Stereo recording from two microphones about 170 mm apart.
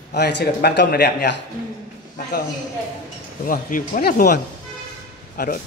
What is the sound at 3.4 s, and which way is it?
Speech, 55° left (ahead or behind).